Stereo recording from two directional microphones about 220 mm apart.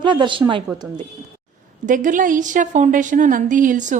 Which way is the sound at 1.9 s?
35° right (ahead or behind).